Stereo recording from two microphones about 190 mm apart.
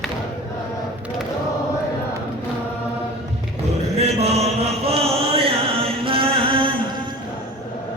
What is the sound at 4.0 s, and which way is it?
Chant, 35° right (ahead or behind).